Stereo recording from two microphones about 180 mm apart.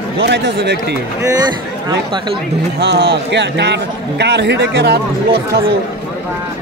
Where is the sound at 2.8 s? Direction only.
70° right (ahead or behind).